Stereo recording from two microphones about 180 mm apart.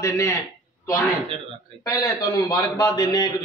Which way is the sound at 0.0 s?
15° left (ahead or behind).